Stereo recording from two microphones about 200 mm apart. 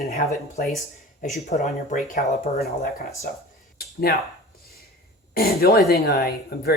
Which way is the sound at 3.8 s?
50° left (ahead or behind).